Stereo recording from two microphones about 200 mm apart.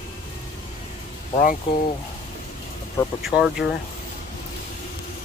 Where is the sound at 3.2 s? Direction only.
Centre (ahead or behind).